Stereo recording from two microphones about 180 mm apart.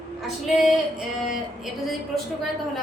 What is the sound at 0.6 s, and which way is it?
Female singing, centre (ahead or behind).